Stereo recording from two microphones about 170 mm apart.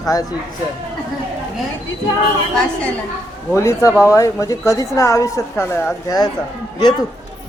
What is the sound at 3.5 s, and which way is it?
A woman's voice, 15° left (ahead or behind).